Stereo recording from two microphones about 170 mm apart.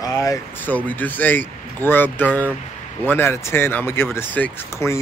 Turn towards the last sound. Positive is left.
turn(degrees=15)  # may be behind; listen again after turning